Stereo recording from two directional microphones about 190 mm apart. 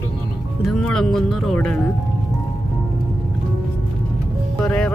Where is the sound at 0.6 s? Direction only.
Centre (ahead or behind).